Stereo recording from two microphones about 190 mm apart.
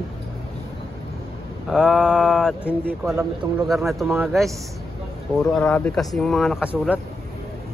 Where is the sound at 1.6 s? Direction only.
5° right (ahead or behind).